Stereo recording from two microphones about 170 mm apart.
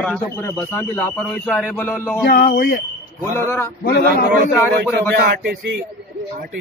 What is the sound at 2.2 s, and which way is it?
Speech, 55° left (ahead or behind).